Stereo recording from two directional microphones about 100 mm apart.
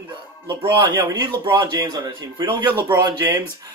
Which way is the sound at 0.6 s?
55° right (ahead or behind).